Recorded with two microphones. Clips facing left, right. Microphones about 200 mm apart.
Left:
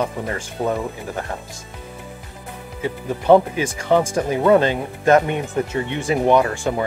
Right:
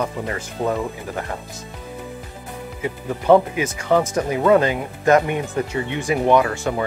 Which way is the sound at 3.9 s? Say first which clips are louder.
Left 1 dB; 20° left (ahead or behind).